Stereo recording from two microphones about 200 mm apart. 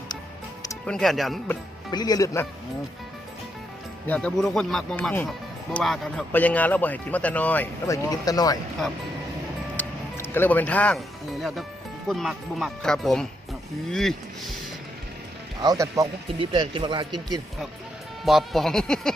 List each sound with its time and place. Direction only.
0.9 s speech: centre (ahead or behind)
1.5 s speech: 20° left (ahead or behind)
4.0 s speech: 5° left (ahead or behind)
9.7 s speech: 10° left (ahead or behind)
15.6 s speech: 15° right (ahead or behind)
18.3 s speech: centre (ahead or behind)